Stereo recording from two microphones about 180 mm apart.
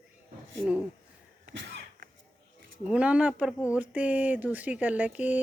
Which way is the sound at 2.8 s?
5° right (ahead or behind).